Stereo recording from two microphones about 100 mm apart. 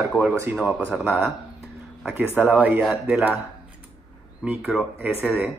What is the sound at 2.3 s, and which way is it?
Speech, 15° right (ahead or behind).